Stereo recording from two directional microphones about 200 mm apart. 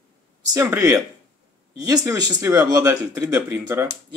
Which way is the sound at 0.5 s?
15° right (ahead or behind).